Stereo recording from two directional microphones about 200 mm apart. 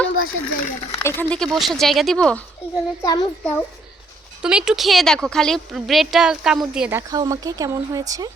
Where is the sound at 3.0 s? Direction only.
20° left (ahead or behind).